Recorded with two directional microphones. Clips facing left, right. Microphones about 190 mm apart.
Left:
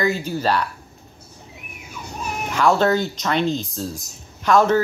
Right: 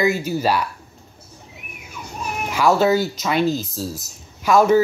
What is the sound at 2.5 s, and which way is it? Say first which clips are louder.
Speech: right 1 dB; 5° right (ahead or behind).